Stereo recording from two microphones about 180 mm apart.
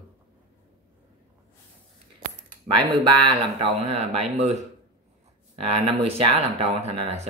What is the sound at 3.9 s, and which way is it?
Speech, 35° right (ahead or behind).